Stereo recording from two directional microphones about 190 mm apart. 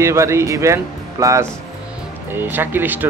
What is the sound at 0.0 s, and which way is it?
Speech, 15° right (ahead or behind).